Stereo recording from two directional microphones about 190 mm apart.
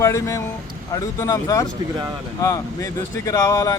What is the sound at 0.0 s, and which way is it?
Speech, 15° left (ahead or behind).